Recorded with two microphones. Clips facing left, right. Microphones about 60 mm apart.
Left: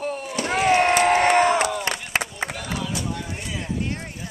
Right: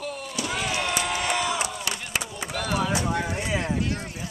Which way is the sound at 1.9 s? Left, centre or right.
Left.